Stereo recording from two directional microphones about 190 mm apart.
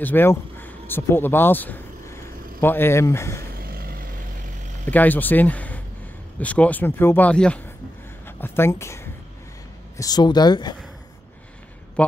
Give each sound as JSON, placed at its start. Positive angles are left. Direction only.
{"t": 0.0, "sound": "speech", "side_deg": 10}
{"t": 3.5, "sound": "vehicle", "side_deg": -50}
{"t": 4.8, "sound": "a woman's voice", "side_deg": 10}